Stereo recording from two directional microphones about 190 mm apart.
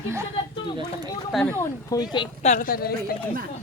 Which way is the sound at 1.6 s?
20° left (ahead or behind).